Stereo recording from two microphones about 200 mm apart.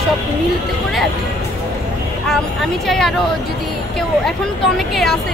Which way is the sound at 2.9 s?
Centre (ahead or behind).